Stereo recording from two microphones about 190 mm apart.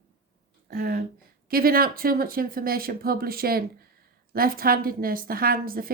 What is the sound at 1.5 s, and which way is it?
Speech, 50° right (ahead or behind).